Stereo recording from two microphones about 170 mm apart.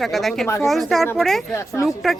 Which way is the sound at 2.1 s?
Centre (ahead or behind).